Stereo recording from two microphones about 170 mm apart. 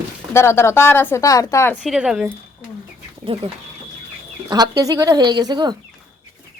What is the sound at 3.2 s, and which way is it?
Speech, 30° right (ahead or behind).